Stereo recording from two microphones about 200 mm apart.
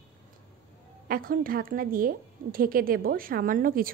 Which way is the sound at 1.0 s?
45° right (ahead or behind).